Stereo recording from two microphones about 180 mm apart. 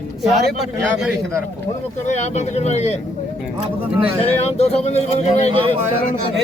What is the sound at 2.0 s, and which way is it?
Speech, 40° left (ahead or behind).